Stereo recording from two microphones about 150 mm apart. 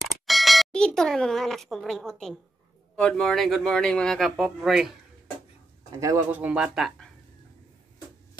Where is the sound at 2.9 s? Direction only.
5° left (ahead or behind).